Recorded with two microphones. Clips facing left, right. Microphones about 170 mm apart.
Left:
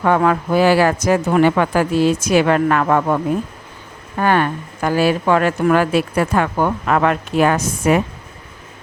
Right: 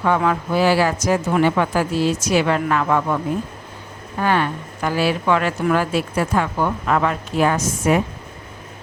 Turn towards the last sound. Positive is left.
turn(degrees=65)  # may be behind; listen again after turning